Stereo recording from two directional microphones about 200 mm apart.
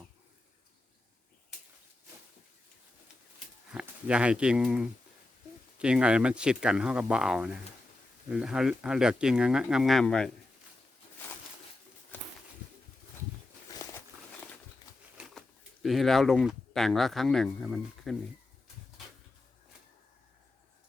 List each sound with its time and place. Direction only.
3.7 s speech: 5° right (ahead or behind)
13.7 s a sound: 15° left (ahead or behind)
15.2 s speech: centre (ahead or behind)